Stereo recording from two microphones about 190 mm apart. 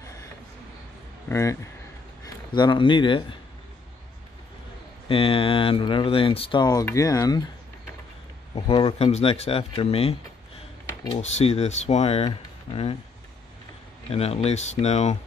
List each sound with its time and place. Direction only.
1.3 s a man's voice: 15° left (ahead or behind)
5.0 s speech: 30° left (ahead or behind)
8.5 s speech: 25° left (ahead or behind)
14.1 s speech: 30° left (ahead or behind)